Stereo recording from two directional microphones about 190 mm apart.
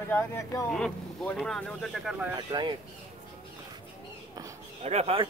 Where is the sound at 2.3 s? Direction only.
20° right (ahead or behind).